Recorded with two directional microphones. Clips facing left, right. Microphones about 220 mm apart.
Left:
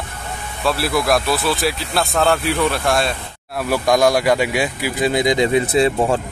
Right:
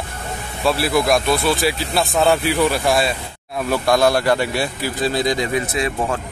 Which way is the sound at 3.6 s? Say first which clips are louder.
Left 1 dB; 15° left (ahead or behind).